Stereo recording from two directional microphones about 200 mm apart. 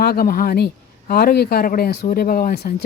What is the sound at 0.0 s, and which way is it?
A man's voice, 50° left (ahead or behind).